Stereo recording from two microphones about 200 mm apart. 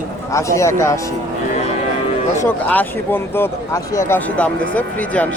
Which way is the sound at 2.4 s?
10° left (ahead or behind).